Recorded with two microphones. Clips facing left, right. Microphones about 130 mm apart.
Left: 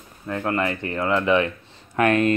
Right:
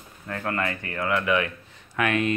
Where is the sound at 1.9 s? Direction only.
40° left (ahead or behind).